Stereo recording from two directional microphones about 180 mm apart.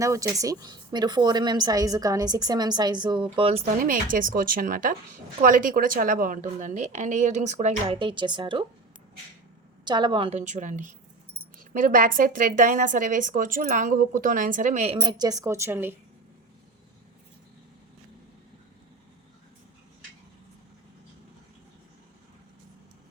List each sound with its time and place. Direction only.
0.0 s a woman's voice: 20° right (ahead or behind)
3.8 s a woman's voice: 50° right (ahead or behind)
7.9 s a woman's voice: 25° right (ahead or behind)
9.8 s a woman's voice: 25° right (ahead or behind)